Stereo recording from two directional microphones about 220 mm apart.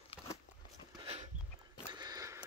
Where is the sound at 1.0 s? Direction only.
25° right (ahead or behind).